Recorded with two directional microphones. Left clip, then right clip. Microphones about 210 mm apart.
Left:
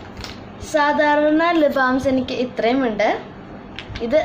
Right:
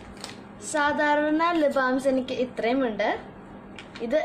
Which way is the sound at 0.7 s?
15° right (ahead or behind).